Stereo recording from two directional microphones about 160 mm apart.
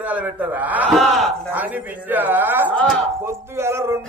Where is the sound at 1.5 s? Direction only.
10° right (ahead or behind).